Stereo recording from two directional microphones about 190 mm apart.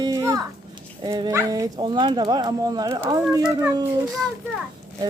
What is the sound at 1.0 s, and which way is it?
Speech, 20° right (ahead or behind).